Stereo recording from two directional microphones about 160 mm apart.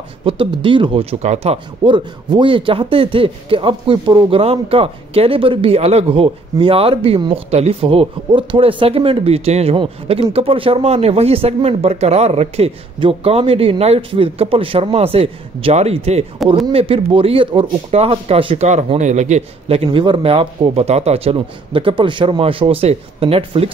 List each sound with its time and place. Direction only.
0.2 s speech: 35° right (ahead or behind)
1.2 s speech: 40° right (ahead or behind)